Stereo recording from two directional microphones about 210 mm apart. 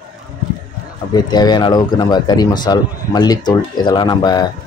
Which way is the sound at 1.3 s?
20° left (ahead or behind).